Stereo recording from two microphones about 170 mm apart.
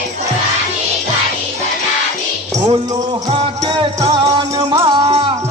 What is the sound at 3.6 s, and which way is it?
Music, 25° right (ahead or behind).